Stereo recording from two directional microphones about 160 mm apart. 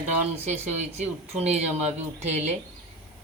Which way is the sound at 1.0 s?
40° right (ahead or behind).